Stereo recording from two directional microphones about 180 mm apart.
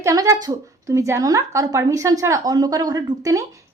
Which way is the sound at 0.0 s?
20° right (ahead or behind).